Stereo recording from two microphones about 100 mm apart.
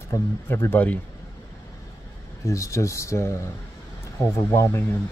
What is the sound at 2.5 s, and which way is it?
Speech, 30° left (ahead or behind).